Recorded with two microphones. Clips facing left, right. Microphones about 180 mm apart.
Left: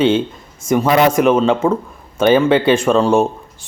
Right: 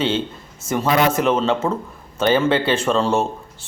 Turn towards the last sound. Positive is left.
turn(degrees=15)  # may be behind; listen again after turning